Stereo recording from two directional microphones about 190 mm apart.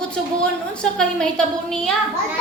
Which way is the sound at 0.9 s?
5° left (ahead or behind).